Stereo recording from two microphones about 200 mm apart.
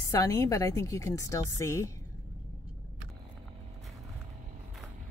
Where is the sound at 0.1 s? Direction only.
15° left (ahead or behind).